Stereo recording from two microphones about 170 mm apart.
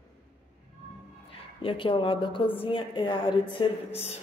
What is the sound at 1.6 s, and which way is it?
A woman's voice, 30° left (ahead or behind).